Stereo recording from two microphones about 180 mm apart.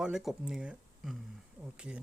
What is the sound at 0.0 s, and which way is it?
Speech, centre (ahead or behind).